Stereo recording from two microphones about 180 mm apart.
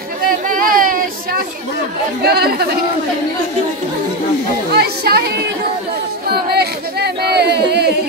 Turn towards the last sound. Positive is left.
turn(degrees=-65)  # may be behind; listen again after turning